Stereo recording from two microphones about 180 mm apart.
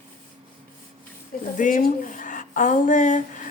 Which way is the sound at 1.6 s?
45° left (ahead or behind).